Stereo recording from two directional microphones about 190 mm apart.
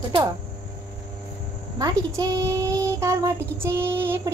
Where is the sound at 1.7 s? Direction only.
20° right (ahead or behind).